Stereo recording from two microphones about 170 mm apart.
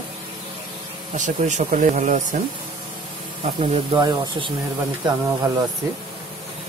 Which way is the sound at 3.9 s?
25° right (ahead or behind).